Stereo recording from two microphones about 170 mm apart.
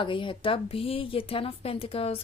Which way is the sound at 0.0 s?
30° left (ahead or behind).